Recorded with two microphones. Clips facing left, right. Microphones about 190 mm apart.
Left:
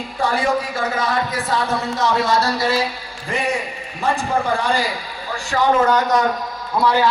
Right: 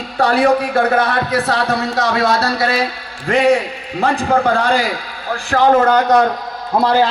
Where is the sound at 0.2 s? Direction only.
65° right (ahead or behind).